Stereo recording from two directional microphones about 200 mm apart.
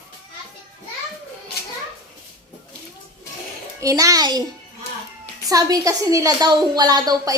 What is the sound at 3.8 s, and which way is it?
Speech, 15° right (ahead or behind).